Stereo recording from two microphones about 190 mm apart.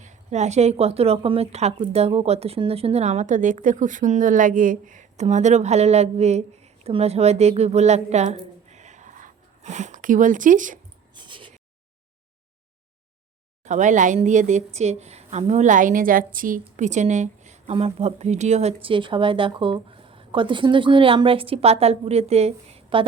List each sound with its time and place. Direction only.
0.0 s speech: 40° right (ahead or behind)
11.1 s a sound: 25° right (ahead or behind)
13.7 s speech: 40° right (ahead or behind)